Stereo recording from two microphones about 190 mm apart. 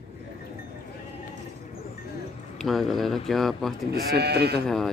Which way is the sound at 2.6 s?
Centre (ahead or behind).